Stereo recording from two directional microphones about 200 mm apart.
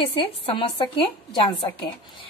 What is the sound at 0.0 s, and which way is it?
A woman's voice, 25° left (ahead or behind).